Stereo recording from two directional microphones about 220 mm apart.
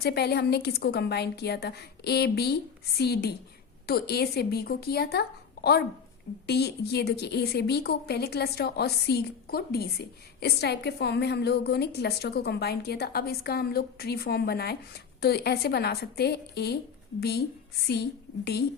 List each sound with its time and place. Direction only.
0.0 s a woman's voice: 45° left (ahead or behind)
6.5 s a woman's voice: 50° left (ahead or behind)